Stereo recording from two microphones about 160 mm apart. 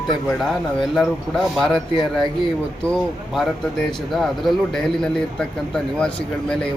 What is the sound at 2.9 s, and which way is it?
A man's voice, centre (ahead or behind).